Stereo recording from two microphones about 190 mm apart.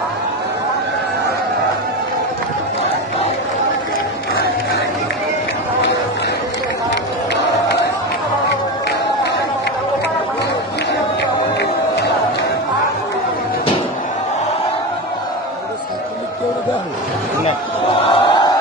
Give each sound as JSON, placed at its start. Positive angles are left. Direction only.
{"t": 17.9, "sound": "chant", "side_deg": 25}